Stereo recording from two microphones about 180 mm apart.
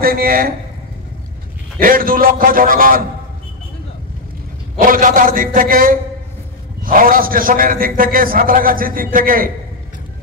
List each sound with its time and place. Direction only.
0.0 s a man's voice: 55° right (ahead or behind)
1.8 s a man's voice: 50° right (ahead or behind)
4.7 s a man's voice: 50° right (ahead or behind)